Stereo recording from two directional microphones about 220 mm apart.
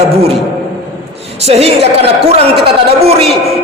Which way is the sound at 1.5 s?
30° right (ahead or behind).